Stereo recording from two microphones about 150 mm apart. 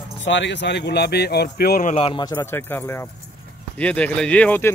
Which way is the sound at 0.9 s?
90° left.